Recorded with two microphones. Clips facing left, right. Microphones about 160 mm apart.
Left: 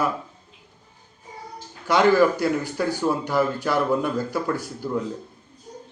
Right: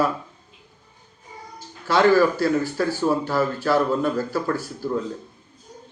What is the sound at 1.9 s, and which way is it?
Speech, 15° left (ahead or behind).